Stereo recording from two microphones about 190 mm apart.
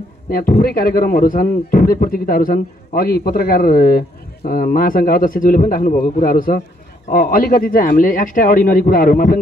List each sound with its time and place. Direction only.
0.3 s a man's voice: 50° left (ahead or behind)